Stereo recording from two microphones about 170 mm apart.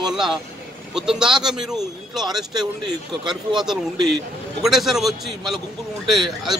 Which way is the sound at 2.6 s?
25° right (ahead or behind).